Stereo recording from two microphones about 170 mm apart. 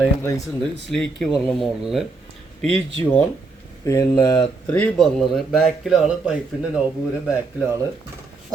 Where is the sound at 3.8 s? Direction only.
20° left (ahead or behind).